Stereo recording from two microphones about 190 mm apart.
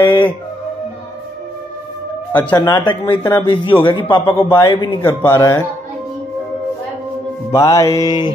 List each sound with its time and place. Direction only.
0.0 s music: 25° left (ahead or behind)
2.3 s a man's voice: 15° left (ahead or behind)
5.0 s speech: 15° left (ahead or behind)
7.5 s a man's voice: 20° left (ahead or behind)